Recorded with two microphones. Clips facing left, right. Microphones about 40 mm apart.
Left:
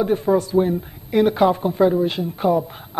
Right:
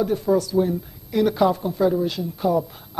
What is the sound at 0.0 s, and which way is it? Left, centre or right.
Speech, left.